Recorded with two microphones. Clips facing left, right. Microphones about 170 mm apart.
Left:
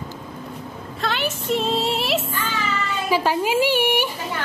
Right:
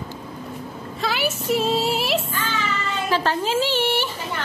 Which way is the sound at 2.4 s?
10° left (ahead or behind).